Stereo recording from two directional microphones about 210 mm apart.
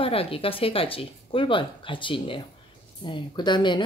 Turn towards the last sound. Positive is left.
turn(degrees=20)  # may be behind; listen again after turning